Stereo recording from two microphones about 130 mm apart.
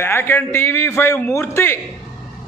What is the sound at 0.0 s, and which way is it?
A man's voice, 15° left (ahead or behind).